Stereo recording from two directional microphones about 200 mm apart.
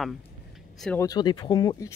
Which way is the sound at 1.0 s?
20° left (ahead or behind).